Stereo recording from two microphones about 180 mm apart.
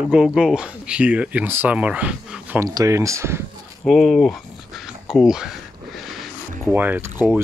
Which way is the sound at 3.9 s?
Centre (ahead or behind).